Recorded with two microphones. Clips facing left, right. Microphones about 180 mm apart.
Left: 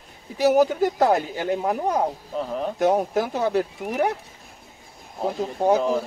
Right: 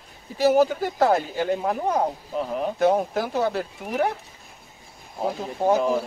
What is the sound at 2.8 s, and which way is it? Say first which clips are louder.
Speech: even; 10° left (ahead or behind).